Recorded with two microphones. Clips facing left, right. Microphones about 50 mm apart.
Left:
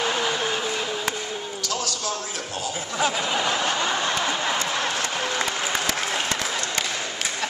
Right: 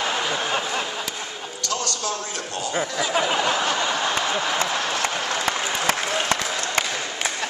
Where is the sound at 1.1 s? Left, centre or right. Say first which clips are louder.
Left 4 dB; left.